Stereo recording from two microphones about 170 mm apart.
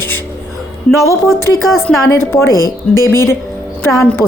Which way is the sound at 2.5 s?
20° right (ahead or behind).